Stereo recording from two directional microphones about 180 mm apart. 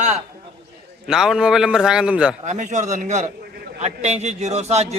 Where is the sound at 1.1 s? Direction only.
5° right (ahead or behind).